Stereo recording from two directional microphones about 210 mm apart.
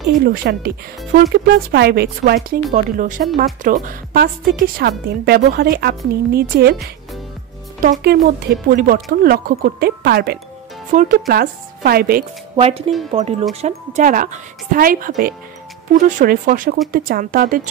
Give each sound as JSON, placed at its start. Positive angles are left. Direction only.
{"t": 0.1, "sound": "a woman's voice", "side_deg": -45}
{"t": 7.8, "sound": "a woman's voice", "side_deg": -45}
{"t": 12.5, "sound": "a woman's voice", "side_deg": -30}